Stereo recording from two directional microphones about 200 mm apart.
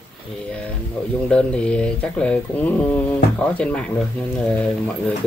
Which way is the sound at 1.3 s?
5° left (ahead or behind).